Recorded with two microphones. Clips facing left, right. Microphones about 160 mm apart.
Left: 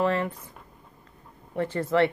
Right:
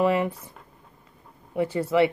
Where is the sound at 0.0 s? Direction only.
10° right (ahead or behind).